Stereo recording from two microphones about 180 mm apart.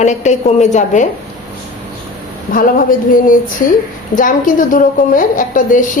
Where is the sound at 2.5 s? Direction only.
50° left (ahead or behind).